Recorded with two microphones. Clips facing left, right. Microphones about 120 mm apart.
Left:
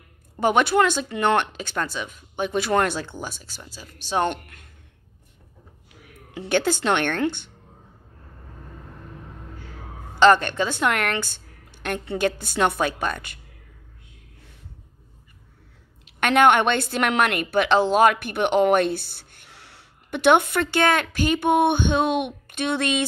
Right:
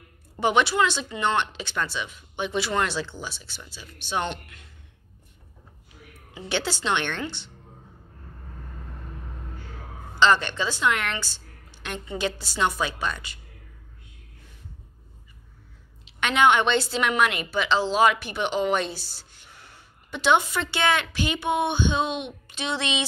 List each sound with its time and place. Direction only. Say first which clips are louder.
0.4 s speech: left 3 dB; 45° left (ahead or behind)
6.5 s speech: left 5 dB; 50° left (ahead or behind)
10.1 s speech: left 5 dB; 50° left (ahead or behind)
16.1 s a woman's voice: left 3 dB; 50° left (ahead or behind)